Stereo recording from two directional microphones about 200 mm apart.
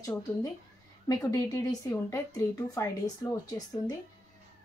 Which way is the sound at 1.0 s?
20° left (ahead or behind).